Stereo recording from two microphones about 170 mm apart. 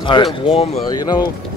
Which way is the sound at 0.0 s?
30° left (ahead or behind).